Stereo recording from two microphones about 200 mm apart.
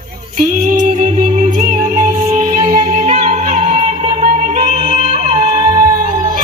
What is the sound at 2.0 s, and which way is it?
Music, 40° right (ahead or behind).